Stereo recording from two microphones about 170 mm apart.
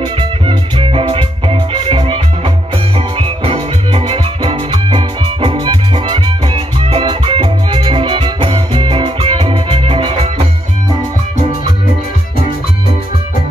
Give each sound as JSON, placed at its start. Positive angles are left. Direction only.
{"t": 0.0, "sound": "music", "side_deg": -30}